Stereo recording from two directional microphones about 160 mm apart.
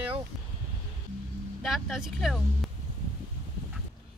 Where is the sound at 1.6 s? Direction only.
Centre (ahead or behind).